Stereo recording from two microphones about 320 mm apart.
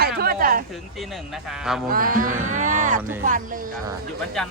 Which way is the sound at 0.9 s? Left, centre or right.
Centre.